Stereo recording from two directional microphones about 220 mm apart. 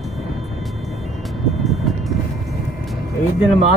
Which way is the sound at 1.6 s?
Centre (ahead or behind).